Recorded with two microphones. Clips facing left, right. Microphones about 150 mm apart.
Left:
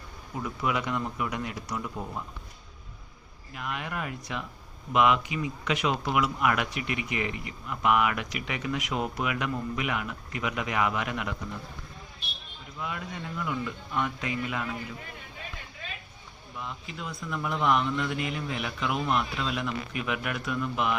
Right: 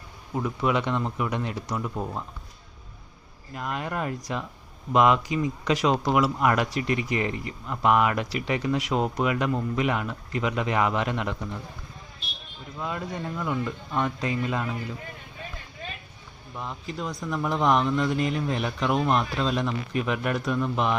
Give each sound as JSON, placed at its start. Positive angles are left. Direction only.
{"t": 0.6, "sound": "speech", "side_deg": -30}
{"t": 3.5, "sound": "speech", "side_deg": -35}
{"t": 12.8, "sound": "speech", "side_deg": -35}
{"t": 16.6, "sound": "speech", "side_deg": -35}